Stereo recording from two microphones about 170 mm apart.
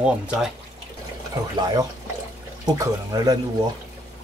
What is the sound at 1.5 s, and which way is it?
Speech, 25° right (ahead or behind).